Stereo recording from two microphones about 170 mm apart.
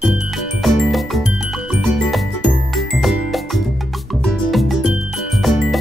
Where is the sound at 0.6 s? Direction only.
Centre (ahead or behind).